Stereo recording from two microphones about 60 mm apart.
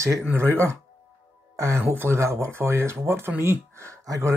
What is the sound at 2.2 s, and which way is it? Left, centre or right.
Speech, right.